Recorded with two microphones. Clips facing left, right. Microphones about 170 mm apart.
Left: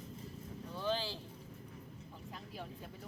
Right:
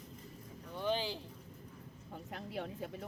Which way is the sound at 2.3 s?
65° right (ahead or behind).